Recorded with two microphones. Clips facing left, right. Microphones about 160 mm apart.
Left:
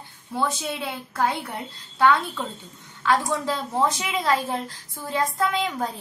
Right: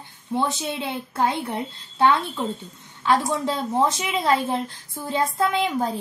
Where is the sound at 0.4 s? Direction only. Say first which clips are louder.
Right 1 dB; 20° right (ahead or behind).